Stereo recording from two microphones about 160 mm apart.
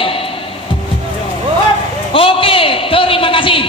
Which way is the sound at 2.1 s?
35° left (ahead or behind).